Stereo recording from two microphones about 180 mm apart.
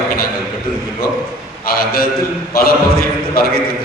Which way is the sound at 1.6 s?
55° left (ahead or behind).